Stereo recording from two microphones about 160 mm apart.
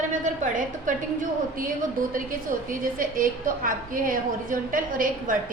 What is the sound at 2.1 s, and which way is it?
A woman's voice, 60° right (ahead or behind).